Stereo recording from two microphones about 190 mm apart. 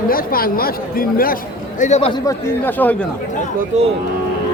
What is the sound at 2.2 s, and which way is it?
Speech, 10° left (ahead or behind).